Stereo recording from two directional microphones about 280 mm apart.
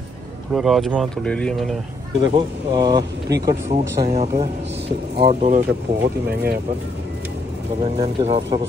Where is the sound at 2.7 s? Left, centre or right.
Centre.